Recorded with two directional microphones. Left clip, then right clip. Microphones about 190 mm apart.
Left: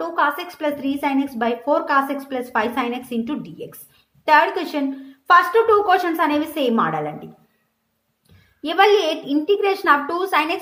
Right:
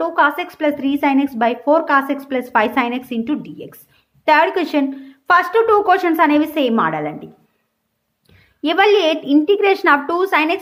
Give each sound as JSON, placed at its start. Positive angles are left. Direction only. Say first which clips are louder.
{"t": 0.0, "sound": "a woman's voice", "louder": "right 5 dB", "side_deg": -25}
{"t": 8.6, "sound": "a woman's voice", "louder": "right 2 dB", "side_deg": -30}